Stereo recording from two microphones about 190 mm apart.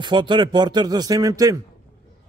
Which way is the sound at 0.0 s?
25° right (ahead or behind).